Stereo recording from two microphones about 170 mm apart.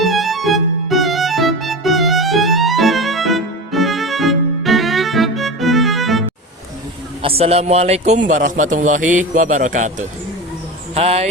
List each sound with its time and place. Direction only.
0.0 s music: centre (ahead or behind)
7.2 s a man's voice: 35° right (ahead or behind)